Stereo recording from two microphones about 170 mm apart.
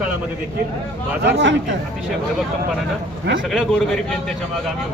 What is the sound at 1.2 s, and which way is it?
Speech, 90° right.